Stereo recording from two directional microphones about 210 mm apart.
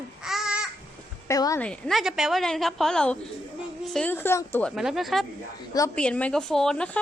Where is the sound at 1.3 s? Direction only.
15° left (ahead or behind).